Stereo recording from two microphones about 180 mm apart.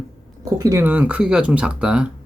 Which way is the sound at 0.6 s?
15° right (ahead or behind).